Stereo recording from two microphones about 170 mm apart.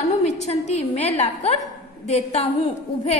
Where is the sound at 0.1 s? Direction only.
40° left (ahead or behind).